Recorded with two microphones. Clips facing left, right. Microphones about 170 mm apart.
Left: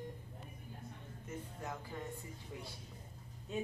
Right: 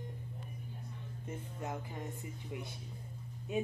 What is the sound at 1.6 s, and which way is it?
Speech, 20° right (ahead or behind).